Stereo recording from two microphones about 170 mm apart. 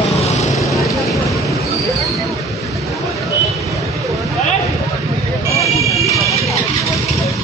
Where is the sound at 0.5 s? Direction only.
Centre (ahead or behind).